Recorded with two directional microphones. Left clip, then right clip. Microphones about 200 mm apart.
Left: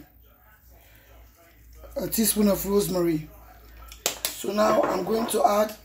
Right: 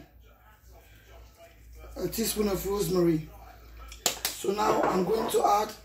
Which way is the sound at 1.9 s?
50° left (ahead or behind).